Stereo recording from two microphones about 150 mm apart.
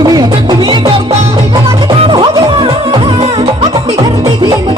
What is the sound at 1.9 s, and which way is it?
Music, 40° right (ahead or behind).